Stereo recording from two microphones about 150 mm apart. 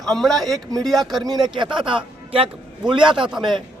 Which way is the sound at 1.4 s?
30° right (ahead or behind).